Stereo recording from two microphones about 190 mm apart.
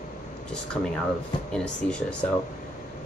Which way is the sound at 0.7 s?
5° left (ahead or behind).